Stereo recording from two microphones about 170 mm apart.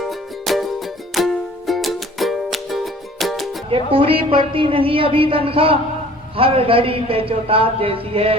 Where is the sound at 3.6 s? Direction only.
30° right (ahead or behind).